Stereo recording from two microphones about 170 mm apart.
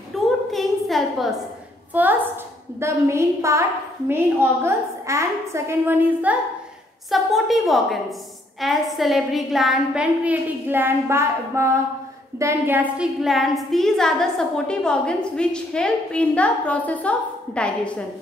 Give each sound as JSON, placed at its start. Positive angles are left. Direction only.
{"t": 0.1, "sound": "a sound", "side_deg": 0}
{"t": 2.0, "sound": "a woman's voice", "side_deg": -10}
{"t": 7.1, "sound": "a woman's voice", "side_deg": 0}